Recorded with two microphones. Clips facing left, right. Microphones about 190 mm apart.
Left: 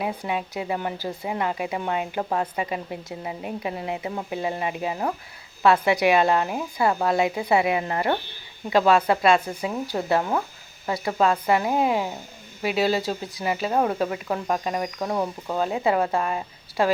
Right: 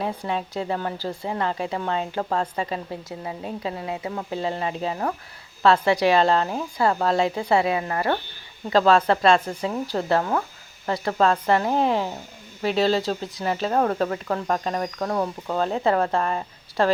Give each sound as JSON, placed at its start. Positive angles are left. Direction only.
{"t": 0.2, "sound": "speech", "side_deg": 15}